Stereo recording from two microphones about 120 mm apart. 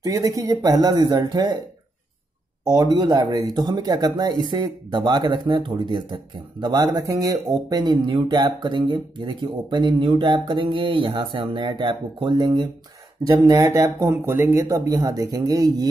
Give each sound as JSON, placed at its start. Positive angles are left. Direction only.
{"t": 0.0, "sound": "speech", "side_deg": -30}
{"t": 2.7, "sound": "speech", "side_deg": -35}
{"t": 13.5, "sound": "speech", "side_deg": -25}